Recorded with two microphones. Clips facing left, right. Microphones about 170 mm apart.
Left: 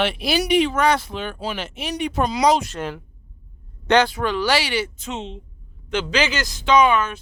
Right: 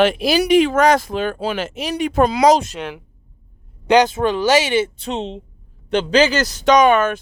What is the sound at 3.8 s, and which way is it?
A man's voice, 15° right (ahead or behind).